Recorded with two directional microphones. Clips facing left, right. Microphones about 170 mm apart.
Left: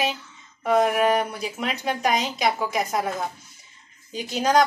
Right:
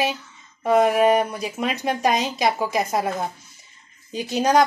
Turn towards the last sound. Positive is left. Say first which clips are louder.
# right 3 dB
turn(degrees=-20)  # may be behind; listen again after turning